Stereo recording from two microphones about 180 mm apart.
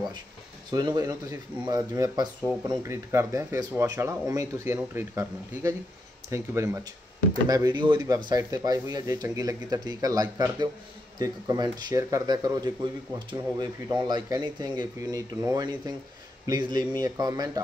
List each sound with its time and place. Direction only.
0.7 s speech: 20° right (ahead or behind)